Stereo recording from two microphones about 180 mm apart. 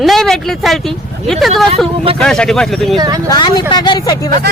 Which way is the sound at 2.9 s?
25° right (ahead or behind).